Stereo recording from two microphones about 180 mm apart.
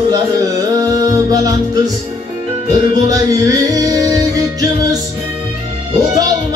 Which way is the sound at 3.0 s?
20° right (ahead or behind).